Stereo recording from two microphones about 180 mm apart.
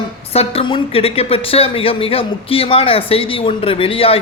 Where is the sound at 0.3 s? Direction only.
30° left (ahead or behind).